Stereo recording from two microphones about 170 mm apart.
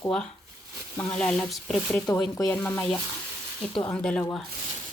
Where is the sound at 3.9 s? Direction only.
5° left (ahead or behind).